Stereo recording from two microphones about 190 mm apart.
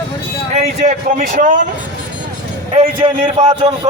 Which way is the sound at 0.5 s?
35° right (ahead or behind).